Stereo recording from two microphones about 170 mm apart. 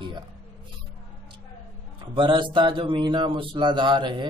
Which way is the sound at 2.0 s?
30° right (ahead or behind).